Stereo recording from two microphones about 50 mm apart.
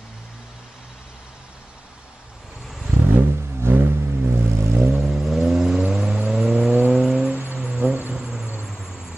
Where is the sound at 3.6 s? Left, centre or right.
Right.